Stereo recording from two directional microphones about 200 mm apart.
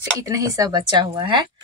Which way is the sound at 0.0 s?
15° right (ahead or behind).